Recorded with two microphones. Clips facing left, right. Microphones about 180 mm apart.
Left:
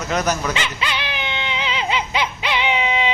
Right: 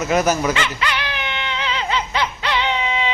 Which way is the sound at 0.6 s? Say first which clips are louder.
Right 2 dB; 20° left (ahead or behind).